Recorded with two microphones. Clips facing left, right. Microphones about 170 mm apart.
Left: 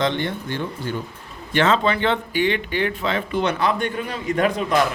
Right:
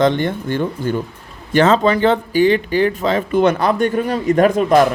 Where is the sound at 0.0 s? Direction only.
45° right (ahead or behind).